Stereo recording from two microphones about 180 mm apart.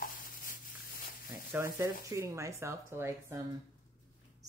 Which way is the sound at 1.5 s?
15° right (ahead or behind).